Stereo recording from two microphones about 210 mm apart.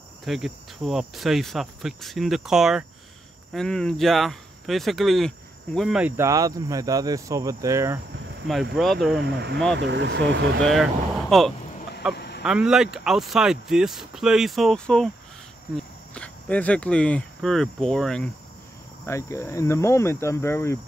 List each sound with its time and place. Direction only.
0.2 s cricket: centre (ahead or behind)
5.8 s speech: 5° right (ahead or behind)
8.7 s cricket: centre (ahead or behind)
9.2 s speech: 50° right (ahead or behind)
10.6 s speech: centre (ahead or behind)
12.2 s fowl: 55° left (ahead or behind)
12.4 s cricket: 5° right (ahead or behind)
15.7 s speech: 5° left (ahead or behind)
19.0 s speech: 15° left (ahead or behind)